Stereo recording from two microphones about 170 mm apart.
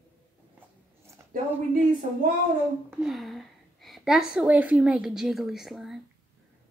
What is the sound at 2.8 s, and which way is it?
A woman's voice, 5° right (ahead or behind).